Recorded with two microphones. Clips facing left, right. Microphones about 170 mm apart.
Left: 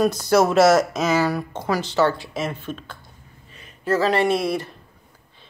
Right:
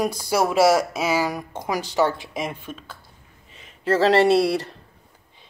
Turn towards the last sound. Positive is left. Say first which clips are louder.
# right 3 dB
turn(degrees=-35)  # may be behind; listen again after turning